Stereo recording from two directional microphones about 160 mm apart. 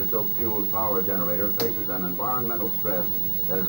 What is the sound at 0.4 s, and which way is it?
A man's voice, 30° left (ahead or behind).